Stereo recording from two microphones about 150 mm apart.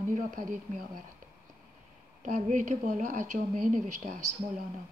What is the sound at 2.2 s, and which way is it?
Speech, 50° right (ahead or behind).